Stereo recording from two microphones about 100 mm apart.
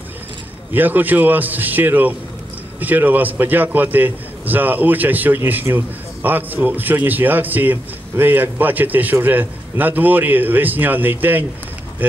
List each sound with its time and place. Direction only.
0.7 s a man's voice: 20° right (ahead or behind)